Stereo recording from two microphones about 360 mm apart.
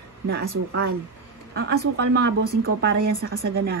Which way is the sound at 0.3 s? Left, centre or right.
Right.